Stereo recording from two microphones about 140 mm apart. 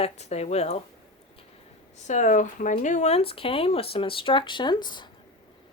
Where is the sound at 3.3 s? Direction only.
40° left (ahead or behind).